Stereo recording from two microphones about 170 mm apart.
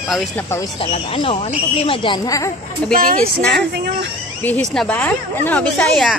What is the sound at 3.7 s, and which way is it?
Speech, 80° right.